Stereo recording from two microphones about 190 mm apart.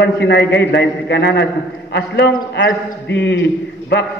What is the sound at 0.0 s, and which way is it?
A man's voice, 65° left (ahead or behind).